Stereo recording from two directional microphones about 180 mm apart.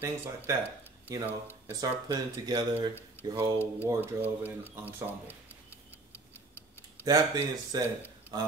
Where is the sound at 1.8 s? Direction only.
20° right (ahead or behind).